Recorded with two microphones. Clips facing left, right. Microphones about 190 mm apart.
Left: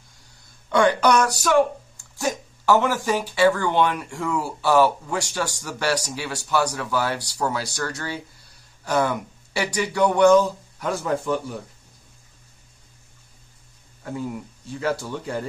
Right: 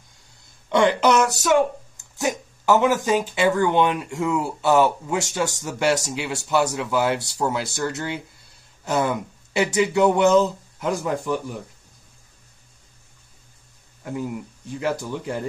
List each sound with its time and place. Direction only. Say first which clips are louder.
0.7 s speech: even; 20° right (ahead or behind)
14.8 s speech: even; 20° right (ahead or behind)